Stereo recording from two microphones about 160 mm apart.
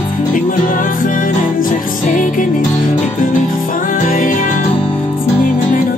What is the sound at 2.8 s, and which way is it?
Music, 55° left (ahead or behind).